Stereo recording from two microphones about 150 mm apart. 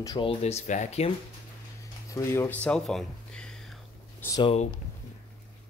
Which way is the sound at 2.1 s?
20° left (ahead or behind).